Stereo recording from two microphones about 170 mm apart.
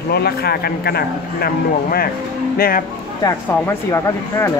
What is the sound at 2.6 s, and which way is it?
Speech, 60° left (ahead or behind).